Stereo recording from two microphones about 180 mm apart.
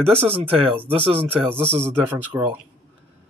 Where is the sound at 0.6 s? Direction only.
30° right (ahead or behind).